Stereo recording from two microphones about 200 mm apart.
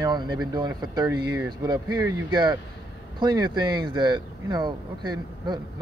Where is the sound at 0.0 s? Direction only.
20° right (ahead or behind).